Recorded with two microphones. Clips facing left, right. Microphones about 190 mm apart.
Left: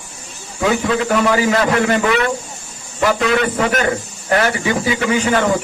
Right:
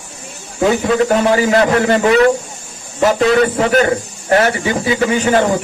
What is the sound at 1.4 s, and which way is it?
Speech, 30° right (ahead or behind).